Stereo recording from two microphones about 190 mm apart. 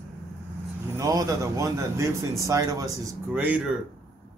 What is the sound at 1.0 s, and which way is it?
Speech, 15° right (ahead or behind).